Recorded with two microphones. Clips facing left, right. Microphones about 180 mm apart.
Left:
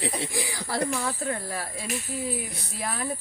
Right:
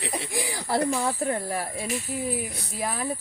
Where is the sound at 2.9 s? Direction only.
10° right (ahead or behind).